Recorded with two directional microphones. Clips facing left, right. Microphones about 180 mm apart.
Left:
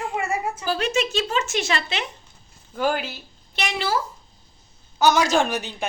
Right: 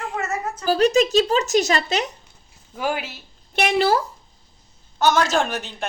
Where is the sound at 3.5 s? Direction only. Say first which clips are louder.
Right 8 dB; 55° right (ahead or behind).